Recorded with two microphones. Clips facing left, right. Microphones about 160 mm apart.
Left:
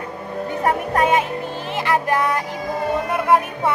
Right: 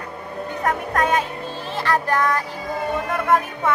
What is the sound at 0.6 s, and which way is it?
Music, 20° left (ahead or behind).